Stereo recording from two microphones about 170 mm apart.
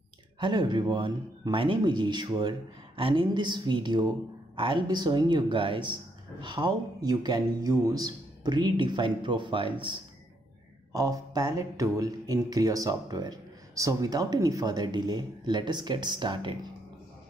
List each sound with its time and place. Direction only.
0.4 s speech: 25° right (ahead or behind)